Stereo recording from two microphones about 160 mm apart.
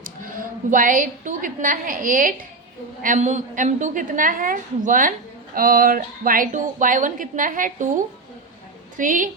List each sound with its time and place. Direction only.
0.2 s a woman's voice: 60° right (ahead or behind)